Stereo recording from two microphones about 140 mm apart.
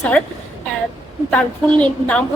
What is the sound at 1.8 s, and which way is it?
Speech, 10° left (ahead or behind).